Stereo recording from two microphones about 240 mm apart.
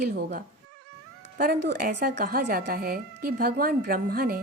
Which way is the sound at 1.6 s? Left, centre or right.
Right.